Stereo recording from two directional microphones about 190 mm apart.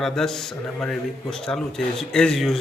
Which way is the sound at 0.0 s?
Centre (ahead or behind).